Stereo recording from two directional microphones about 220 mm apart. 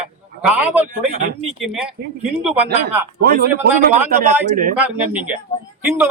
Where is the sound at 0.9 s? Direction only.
40° right (ahead or behind).